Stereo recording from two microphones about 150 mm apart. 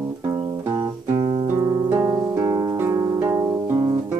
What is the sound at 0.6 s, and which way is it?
Music, 30° right (ahead or behind).